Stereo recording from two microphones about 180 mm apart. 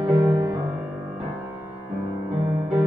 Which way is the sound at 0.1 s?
20° right (ahead or behind).